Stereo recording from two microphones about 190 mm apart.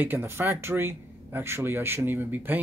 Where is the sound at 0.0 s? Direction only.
10° right (ahead or behind).